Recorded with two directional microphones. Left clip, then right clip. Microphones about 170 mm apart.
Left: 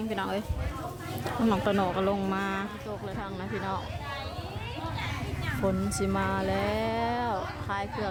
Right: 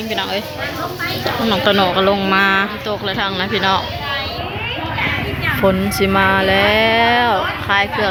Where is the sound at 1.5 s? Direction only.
20° left (ahead or behind).